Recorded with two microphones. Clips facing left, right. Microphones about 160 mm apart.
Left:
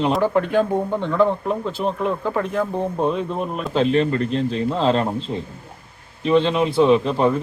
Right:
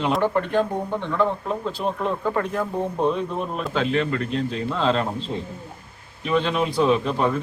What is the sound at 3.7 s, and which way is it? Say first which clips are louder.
A man's voice: left 5 dB; 35° left (ahead or behind).